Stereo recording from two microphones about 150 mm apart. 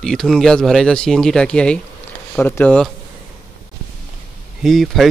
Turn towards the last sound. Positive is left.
turn(degrees=0)  # may be behind; listen again after turning